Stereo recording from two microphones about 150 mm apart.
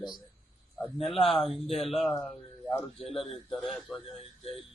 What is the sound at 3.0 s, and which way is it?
Speech, 40° left (ahead or behind).